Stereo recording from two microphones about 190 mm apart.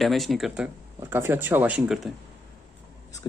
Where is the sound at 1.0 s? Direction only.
15° right (ahead or behind).